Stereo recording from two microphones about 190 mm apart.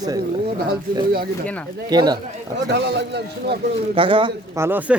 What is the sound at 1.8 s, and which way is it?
Speech, 20° right (ahead or behind).